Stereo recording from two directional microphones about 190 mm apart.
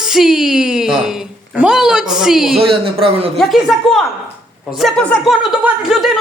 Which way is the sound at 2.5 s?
30° right (ahead or behind).